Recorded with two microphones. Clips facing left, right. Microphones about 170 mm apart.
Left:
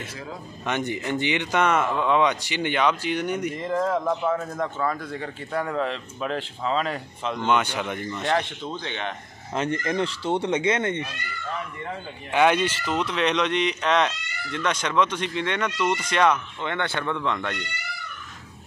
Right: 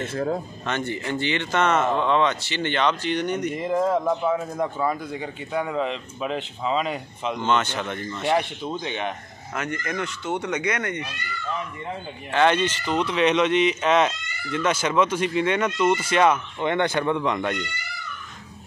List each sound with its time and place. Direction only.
0.0 s speech: 50° right (ahead or behind)
0.7 s speech: 15° left (ahead or behind)
3.5 s speech: 15° right (ahead or behind)
7.4 s speech: 10° left (ahead or behind)
8.3 s speech: 15° right (ahead or behind)
9.5 s speech: 30° left (ahead or behind)
12.3 s speech: 10° left (ahead or behind); by 16.6 s 5° right (ahead or behind)
16.6 s speech: 15° right (ahead or behind)